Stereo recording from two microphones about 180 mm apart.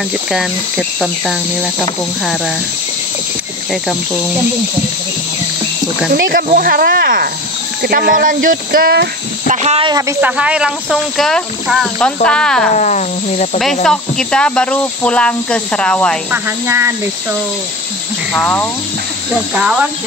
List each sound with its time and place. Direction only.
0.3 s speech: centre (ahead or behind)
6.1 s speech: 55° right (ahead or behind)
9.5 s speech: 40° right (ahead or behind)
9.8 s speech: 20° right (ahead or behind)
10.2 s speech: 5° right (ahead or behind)
12.7 s speech: 40° left (ahead or behind)
13.8 s speech: 5° left (ahead or behind)
16.3 s speech: 15° right (ahead or behind)
18.3 s cricket: 5° left (ahead or behind)
19.6 s speech: 5° right (ahead or behind)